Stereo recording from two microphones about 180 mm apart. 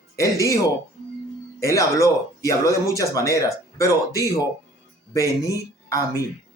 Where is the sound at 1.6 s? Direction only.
15° left (ahead or behind).